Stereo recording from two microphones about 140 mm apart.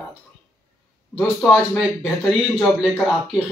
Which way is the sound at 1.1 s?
10° left (ahead or behind).